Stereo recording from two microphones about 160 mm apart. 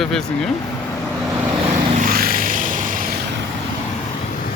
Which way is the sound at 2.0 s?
65° right (ahead or behind).